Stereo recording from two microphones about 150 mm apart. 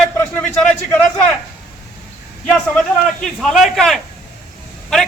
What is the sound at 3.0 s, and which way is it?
A man's voice, centre (ahead or behind).